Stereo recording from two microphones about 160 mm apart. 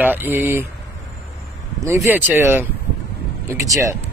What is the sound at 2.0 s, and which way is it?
Speech, 10° right (ahead or behind).